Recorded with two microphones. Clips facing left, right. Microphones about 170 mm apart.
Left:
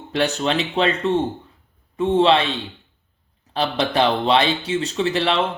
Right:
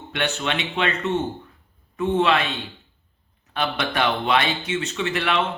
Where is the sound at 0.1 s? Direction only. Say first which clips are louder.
Left 5 dB; 35° left (ahead or behind).